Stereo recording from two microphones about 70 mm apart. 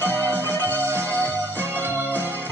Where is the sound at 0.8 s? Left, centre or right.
Right.